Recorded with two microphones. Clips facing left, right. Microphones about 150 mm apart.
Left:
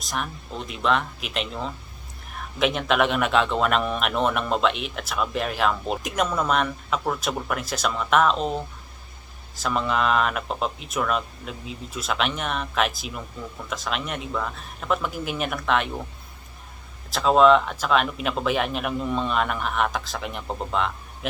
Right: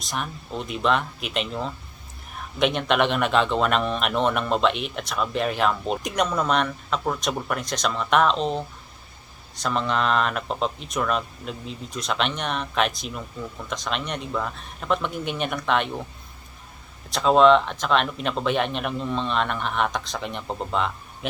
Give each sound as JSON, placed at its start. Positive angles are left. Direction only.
{"t": 0.0, "sound": "speech", "side_deg": 0}
{"t": 9.6, "sound": "speech", "side_deg": 5}
{"t": 17.1, "sound": "speech", "side_deg": 0}